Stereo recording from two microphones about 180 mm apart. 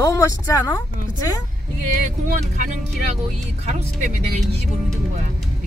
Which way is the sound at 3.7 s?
40° right (ahead or behind).